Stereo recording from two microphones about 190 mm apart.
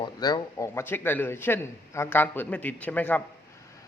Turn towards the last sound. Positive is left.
turn(degrees=10)  # may be behind; listen again after turning